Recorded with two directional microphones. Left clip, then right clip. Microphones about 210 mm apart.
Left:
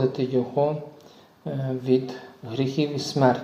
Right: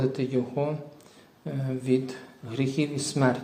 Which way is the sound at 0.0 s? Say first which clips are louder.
Left 4 dB; 20° right (ahead or behind).